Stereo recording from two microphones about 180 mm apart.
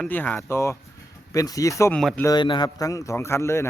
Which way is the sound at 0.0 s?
10° left (ahead or behind).